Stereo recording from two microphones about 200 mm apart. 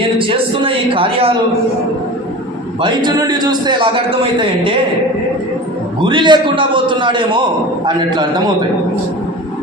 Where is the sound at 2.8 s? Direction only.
20° right (ahead or behind).